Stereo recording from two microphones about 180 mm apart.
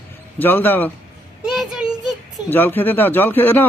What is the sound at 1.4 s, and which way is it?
Child singing, 5° right (ahead or behind).